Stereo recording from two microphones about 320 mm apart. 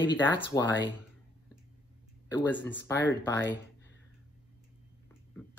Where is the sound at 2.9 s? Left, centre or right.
Centre.